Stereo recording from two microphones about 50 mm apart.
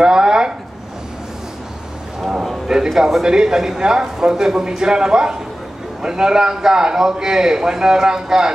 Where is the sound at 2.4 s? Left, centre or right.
Centre.